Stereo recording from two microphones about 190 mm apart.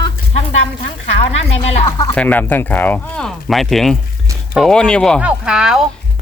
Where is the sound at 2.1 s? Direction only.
10° left (ahead or behind).